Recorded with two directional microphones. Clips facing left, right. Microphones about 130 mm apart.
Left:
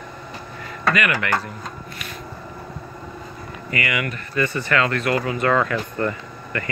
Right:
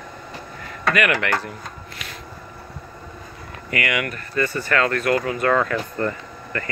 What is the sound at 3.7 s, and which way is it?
Speech, 60° right (ahead or behind).